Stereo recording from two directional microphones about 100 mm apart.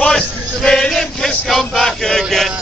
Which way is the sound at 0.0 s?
10° left (ahead or behind).